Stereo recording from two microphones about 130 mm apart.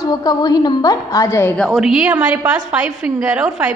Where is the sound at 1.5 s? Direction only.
Centre (ahead or behind).